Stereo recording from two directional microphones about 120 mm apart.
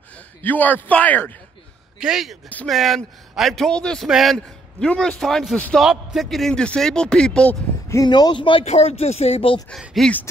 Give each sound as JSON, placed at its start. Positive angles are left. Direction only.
{"t": 0.4, "sound": "a man's voice", "side_deg": 15}
{"t": 2.0, "sound": "a man's voice", "side_deg": -5}
{"t": 7.9, "sound": "speech", "side_deg": 35}
{"t": 8.6, "sound": "speech", "side_deg": 60}
{"t": 9.7, "sound": "a man's voice", "side_deg": 5}